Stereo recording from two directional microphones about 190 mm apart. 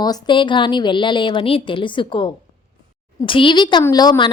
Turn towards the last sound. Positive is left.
turn(degrees=20)  # may be behind; listen again after turning